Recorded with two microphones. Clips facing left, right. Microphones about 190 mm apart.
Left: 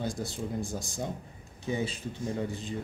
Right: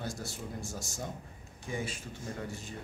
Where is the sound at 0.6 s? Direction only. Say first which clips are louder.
Left 6 dB; 55° left (ahead or behind).